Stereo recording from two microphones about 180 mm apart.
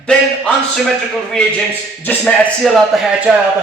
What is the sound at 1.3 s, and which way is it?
A man's voice, 5° left (ahead or behind).